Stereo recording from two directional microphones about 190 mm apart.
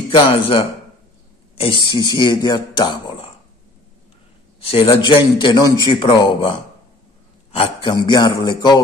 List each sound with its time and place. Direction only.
0.1 s a man's voice: 30° left (ahead or behind)
4.6 s a man's voice: 30° left (ahead or behind)
7.5 s a man's voice: 30° left (ahead or behind)